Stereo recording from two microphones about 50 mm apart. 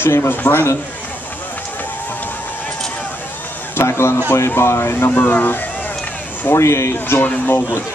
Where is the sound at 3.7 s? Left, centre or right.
Left.